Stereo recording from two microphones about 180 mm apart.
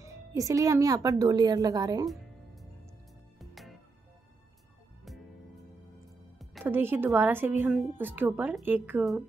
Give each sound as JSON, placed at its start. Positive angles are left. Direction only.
{"t": 0.0, "sound": "speech", "side_deg": -15}
{"t": 2.0, "sound": "music", "side_deg": 0}
{"t": 6.3, "sound": "music", "side_deg": 0}
{"t": 6.6, "sound": "speech", "side_deg": -10}
{"t": 7.6, "sound": "speech", "side_deg": 0}